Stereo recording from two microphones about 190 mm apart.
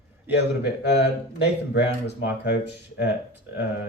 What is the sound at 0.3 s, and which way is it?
A man's voice, 65° left (ahead or behind).